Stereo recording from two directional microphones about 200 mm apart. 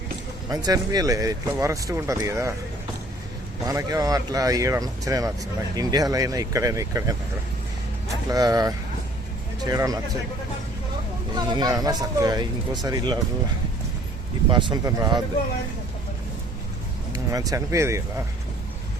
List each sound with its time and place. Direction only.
0.5 s speech: 20° right (ahead or behind)
3.7 s speech: 15° right (ahead or behind)
11.3 s speech: 20° right (ahead or behind)
14.5 s speech: 20° right (ahead or behind)
17.1 s speech: 15° right (ahead or behind)